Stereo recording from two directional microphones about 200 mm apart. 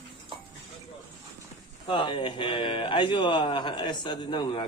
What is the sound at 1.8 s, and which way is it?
Speech, 25° left (ahead or behind).